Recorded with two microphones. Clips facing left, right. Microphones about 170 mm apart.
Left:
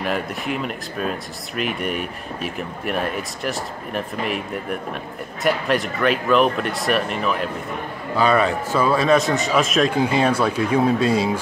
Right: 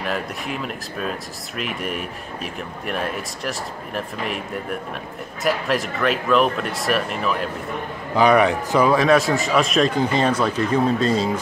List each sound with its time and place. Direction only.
0.0 s speech: centre (ahead or behind)
5.4 s speech: centre (ahead or behind)
8.2 s a man's voice: 15° right (ahead or behind); by 11.3 s 10° left (ahead or behind)